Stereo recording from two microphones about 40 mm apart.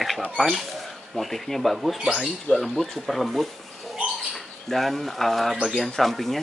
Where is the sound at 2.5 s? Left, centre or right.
Left.